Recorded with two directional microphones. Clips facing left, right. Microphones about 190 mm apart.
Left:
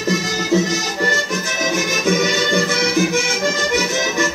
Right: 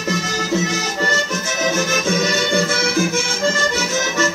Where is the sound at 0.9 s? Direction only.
15° left (ahead or behind).